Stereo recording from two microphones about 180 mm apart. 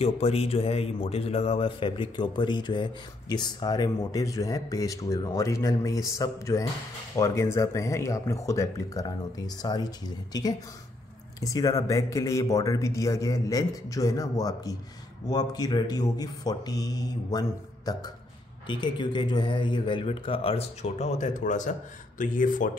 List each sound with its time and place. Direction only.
0.0 s speech: 35° left (ahead or behind)